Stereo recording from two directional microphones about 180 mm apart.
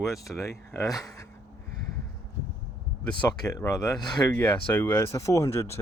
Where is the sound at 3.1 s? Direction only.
20° left (ahead or behind).